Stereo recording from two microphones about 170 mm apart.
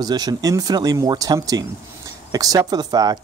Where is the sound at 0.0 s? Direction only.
25° right (ahead or behind).